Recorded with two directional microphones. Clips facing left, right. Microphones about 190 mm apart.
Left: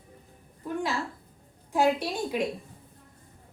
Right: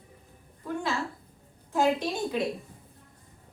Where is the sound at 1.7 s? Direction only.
15° left (ahead or behind).